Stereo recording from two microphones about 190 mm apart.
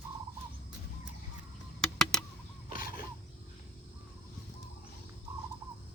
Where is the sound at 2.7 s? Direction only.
45° left (ahead or behind).